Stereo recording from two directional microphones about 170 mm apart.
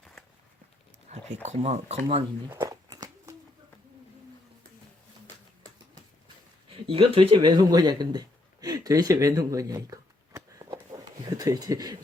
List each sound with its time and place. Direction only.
1.1 s speech: 40° right (ahead or behind)
2.5 s a sound: 20° right (ahead or behind)
6.8 s a man's voice: 35° right (ahead or behind)